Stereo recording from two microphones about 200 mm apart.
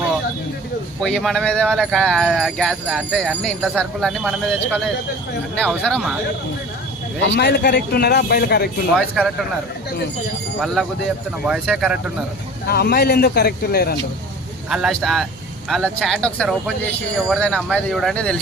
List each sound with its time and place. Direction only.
1.0 s speech: centre (ahead or behind)
5.8 s speech: 5° left (ahead or behind)
7.2 s a man's voice: 60° left (ahead or behind)
9.0 s speech: centre (ahead or behind)
11.4 s speech: centre (ahead or behind)
12.6 s speech: 50° left (ahead or behind)
14.7 s speech: centre (ahead or behind)